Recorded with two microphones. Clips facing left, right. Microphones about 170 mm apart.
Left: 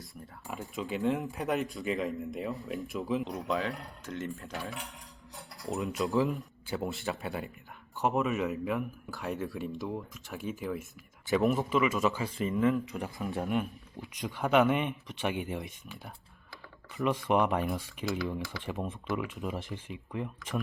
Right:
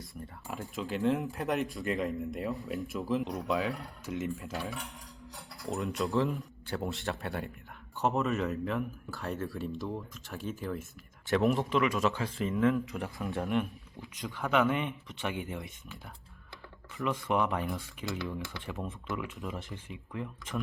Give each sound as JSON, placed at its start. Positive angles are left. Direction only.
{"t": 0.0, "sound": "speech", "side_deg": 0}
{"t": 13.9, "sound": "speech", "side_deg": 20}
{"t": 17.0, "sound": "speech", "side_deg": 20}